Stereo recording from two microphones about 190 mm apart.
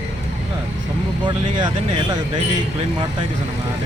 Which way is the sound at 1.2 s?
25° right (ahead or behind).